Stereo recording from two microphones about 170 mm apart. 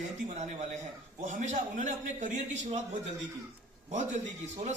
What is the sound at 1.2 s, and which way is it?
A man's voice, 45° right (ahead or behind).